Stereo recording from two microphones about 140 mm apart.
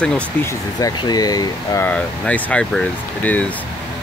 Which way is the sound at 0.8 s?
30° left (ahead or behind).